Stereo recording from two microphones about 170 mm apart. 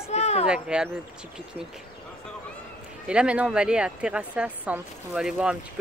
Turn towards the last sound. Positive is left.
turn(degrees=-5)  # may be behind; listen again after turning